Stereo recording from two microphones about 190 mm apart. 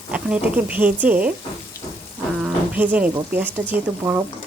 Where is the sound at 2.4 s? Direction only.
10° right (ahead or behind).